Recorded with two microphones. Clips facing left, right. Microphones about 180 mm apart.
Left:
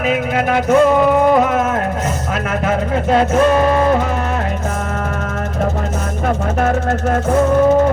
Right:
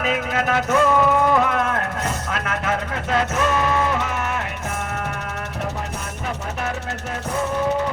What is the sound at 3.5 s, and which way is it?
Music, 45° left (ahead or behind).